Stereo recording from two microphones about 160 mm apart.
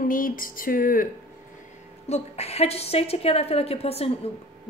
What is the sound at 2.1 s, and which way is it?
A woman's voice, 40° left (ahead or behind).